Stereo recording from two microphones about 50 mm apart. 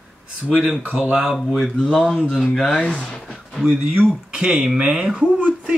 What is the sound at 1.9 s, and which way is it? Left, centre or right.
Speech, centre.